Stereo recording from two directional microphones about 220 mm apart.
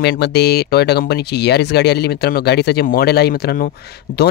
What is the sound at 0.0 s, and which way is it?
Speech, 50° left (ahead or behind).